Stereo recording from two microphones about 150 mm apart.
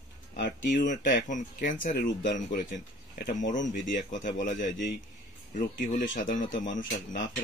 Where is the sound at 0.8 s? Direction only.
55° left (ahead or behind).